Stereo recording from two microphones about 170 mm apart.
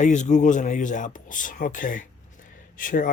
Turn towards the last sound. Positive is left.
turn(degrees=55)  # may be behind; listen again after turning